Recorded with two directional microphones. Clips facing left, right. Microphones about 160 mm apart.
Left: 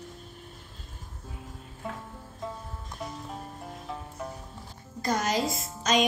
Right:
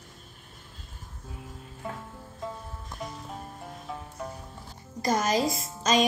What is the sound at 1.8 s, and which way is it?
Music, centre (ahead or behind).